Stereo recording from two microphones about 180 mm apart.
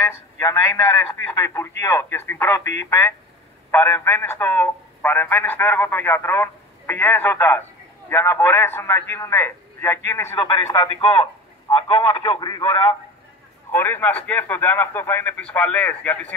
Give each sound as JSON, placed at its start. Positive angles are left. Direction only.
{"t": 0.0, "sound": "a man's voice", "side_deg": 15}
{"t": 11.9, "sound": "a man's voice", "side_deg": 15}